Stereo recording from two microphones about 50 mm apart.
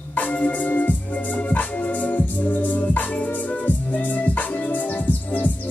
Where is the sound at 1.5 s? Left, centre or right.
Left.